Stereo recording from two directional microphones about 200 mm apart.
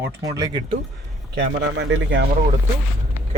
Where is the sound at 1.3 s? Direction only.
60° right (ahead or behind).